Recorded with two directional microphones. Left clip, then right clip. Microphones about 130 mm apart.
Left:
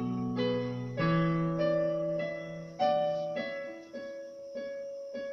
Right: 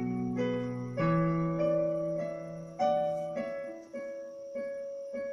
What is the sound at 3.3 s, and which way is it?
Music, 40° right (ahead or behind).